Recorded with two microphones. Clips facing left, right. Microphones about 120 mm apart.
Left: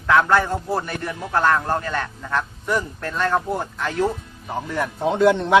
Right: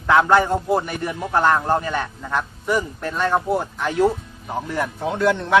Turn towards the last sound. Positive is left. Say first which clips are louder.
# left 2 dB
turn(degrees=20)  # may be behind; listen again after turning